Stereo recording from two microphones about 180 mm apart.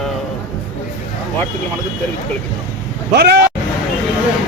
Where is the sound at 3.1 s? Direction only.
70° right (ahead or behind).